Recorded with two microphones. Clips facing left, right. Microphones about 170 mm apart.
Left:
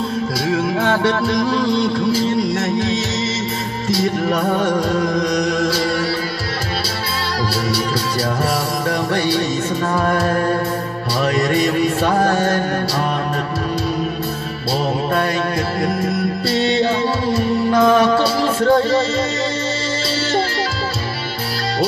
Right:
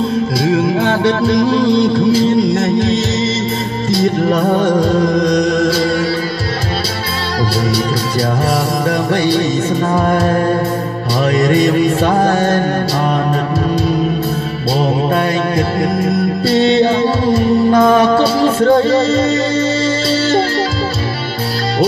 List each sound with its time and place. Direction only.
0.5 s music: 25° right (ahead or behind)
4.3 s music: 30° right (ahead or behind)
9.9 s music: 20° right (ahead or behind)
14.8 s music: 25° right (ahead or behind)